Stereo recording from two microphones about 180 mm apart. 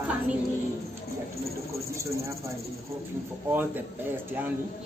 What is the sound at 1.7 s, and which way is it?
Speech, 15° right (ahead or behind).